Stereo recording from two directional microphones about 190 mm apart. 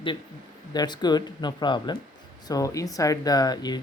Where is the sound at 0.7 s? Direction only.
20° left (ahead or behind).